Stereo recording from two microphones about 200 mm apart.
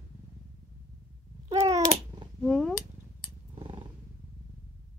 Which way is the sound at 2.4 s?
Centre (ahead or behind).